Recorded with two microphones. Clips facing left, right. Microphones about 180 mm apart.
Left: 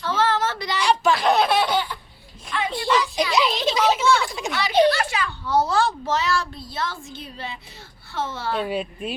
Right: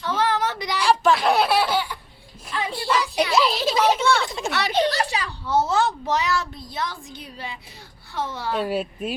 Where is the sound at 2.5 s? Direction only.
35° right (ahead or behind).